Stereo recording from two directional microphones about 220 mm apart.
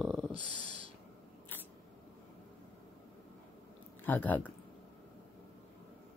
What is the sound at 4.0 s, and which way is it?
Speech, 10° left (ahead or behind).